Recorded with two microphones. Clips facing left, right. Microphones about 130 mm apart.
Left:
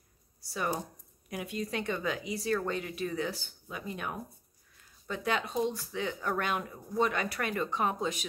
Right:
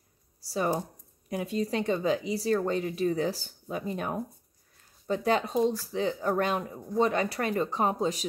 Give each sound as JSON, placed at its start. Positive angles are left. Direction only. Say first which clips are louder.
{"t": 0.4, "sound": "speech", "louder": "right 5 dB", "side_deg": -35}